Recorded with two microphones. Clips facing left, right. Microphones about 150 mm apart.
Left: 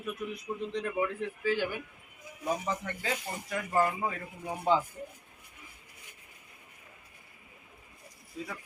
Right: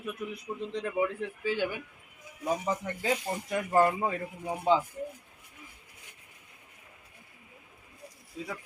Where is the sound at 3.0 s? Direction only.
25° right (ahead or behind).